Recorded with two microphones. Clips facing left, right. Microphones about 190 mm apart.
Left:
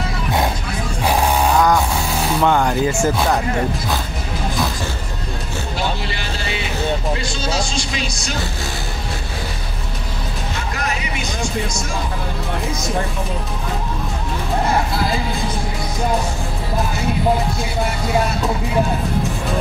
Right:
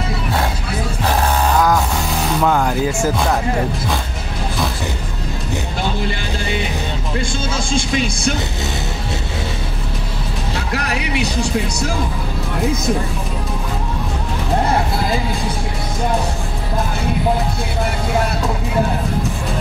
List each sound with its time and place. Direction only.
1.0 s music: 10° left (ahead or behind)
1.6 s a sound: centre (ahead or behind)
7.2 s vehicle: 50° right (ahead or behind)
10.7 s music: 70° right (ahead or behind)